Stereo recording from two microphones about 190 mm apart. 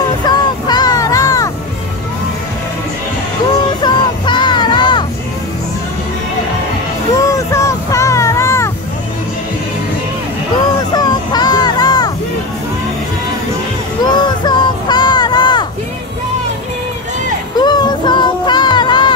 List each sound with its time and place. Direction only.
0.2 s music: 20° left (ahead or behind)
3.8 s music: 25° left (ahead or behind)
7.2 s music: 15° left (ahead or behind)
10.9 s a sound: 20° left (ahead or behind)
14.0 s a sound: 20° left (ahead or behind)
17.6 s music: 20° left (ahead or behind)